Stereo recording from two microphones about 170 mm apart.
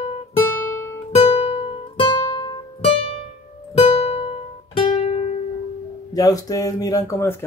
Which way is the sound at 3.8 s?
35° left (ahead or behind).